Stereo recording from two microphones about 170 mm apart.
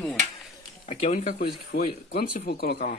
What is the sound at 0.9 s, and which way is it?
Speech, 45° left (ahead or behind).